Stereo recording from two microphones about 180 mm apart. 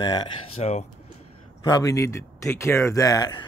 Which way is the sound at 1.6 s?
20° left (ahead or behind).